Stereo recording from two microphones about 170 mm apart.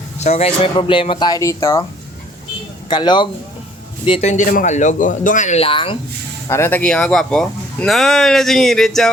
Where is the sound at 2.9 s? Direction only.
25° left (ahead or behind).